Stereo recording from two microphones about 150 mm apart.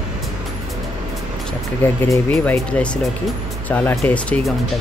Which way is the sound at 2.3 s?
10° left (ahead or behind).